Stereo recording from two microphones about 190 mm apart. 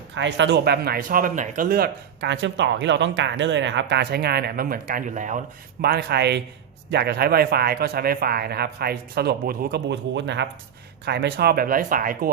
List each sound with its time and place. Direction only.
0.1 s speech: 70° right (ahead or behind); by 5.4 s 40° right (ahead or behind)
5.8 s speech: 55° right (ahead or behind)